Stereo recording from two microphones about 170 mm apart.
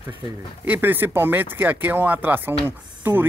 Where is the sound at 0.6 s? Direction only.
10° right (ahead or behind).